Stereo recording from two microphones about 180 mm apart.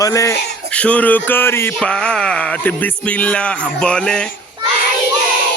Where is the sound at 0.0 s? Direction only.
20° left (ahead or behind).